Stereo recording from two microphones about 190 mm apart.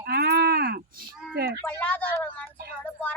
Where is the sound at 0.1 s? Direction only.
60° right (ahead or behind).